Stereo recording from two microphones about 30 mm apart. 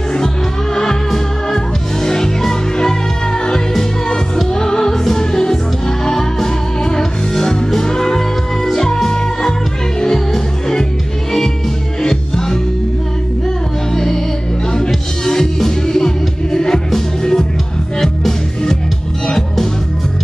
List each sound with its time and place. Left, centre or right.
2.0 s music: centre
4.5 s music: left
12.0 s music: centre
13.9 s music: centre
15.2 s music: centre